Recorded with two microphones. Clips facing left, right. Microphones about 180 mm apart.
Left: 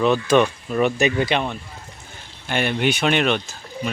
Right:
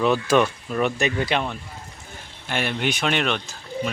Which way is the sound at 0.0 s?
5° right (ahead or behind).